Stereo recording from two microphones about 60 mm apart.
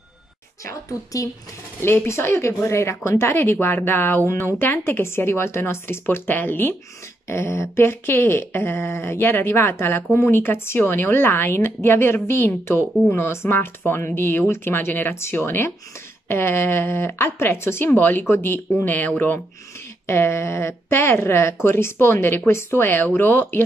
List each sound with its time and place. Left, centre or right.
0.7 s speech: left
1.8 s speech: left
4.3 s speech: left
4.6 s speech: left
20.1 s speech: left